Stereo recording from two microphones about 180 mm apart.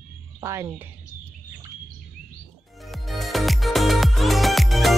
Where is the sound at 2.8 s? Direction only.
Centre (ahead or behind).